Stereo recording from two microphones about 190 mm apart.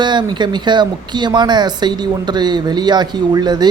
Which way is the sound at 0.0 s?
25° right (ahead or behind).